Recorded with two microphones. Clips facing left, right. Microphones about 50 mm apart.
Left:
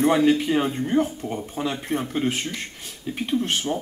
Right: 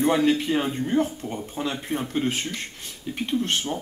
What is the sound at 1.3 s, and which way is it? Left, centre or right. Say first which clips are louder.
Speech: left 2 dB; centre.